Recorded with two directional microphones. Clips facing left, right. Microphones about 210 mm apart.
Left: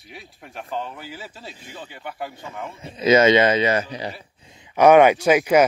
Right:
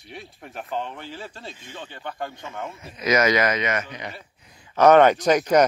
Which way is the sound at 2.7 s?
30° left (ahead or behind).